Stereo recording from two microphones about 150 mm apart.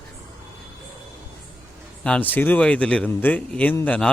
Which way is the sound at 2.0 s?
10° left (ahead or behind).